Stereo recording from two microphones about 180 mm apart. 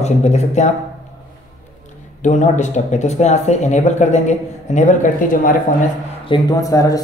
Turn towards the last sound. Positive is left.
turn(degrees=20)  # may be behind; listen again after turning